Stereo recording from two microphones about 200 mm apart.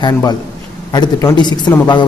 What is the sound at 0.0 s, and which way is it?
A man's voice, 20° left (ahead or behind).